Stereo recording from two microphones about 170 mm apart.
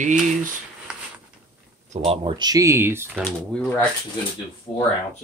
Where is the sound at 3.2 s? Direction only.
5° left (ahead or behind).